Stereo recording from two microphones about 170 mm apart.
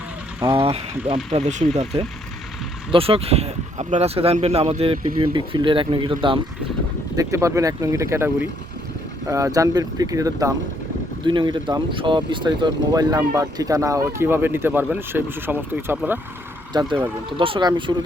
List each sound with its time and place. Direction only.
1.1 s speech: 40° right (ahead or behind)
7.2 s speech: 20° right (ahead or behind)
16.7 s speech: 25° right (ahead or behind)